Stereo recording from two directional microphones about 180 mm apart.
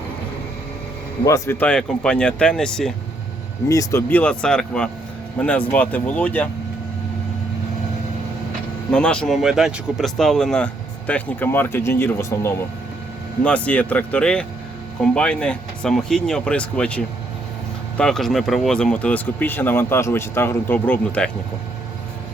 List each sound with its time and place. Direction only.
1.2 s speech: 15° left (ahead or behind)
3.7 s speech: 15° left (ahead or behind)
8.9 s speech: 5° left (ahead or behind)